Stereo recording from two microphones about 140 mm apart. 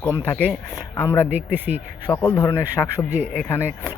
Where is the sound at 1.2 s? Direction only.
15° right (ahead or behind).